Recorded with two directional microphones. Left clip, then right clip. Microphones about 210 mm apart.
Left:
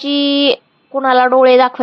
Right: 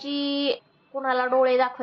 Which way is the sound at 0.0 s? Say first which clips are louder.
Left 13 dB; 40° left (ahead or behind).